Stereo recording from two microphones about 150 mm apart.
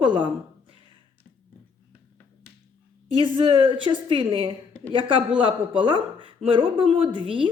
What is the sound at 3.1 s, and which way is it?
Speech, 35° right (ahead or behind).